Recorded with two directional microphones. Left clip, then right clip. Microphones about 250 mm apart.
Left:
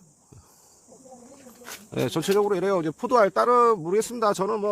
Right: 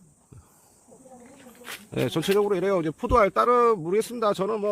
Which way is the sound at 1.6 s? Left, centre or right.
Centre.